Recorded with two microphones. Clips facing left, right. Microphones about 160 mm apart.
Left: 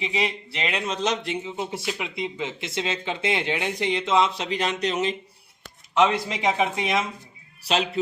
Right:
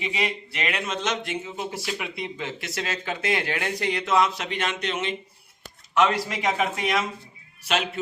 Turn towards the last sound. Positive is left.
turn(degrees=30)  # may be behind; listen again after turning